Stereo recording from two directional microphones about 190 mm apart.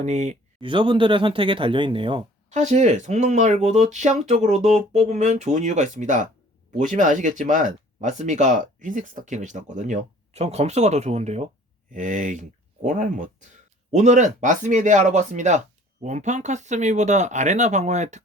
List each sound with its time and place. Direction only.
0.0 s speech: 40° right (ahead or behind)
0.7 s speech: 25° right (ahead or behind)